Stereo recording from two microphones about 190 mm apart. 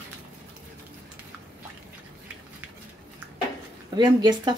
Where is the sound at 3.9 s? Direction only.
20° right (ahead or behind).